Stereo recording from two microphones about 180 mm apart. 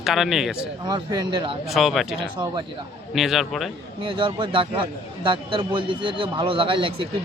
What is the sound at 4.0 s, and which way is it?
Speech, 30° right (ahead or behind).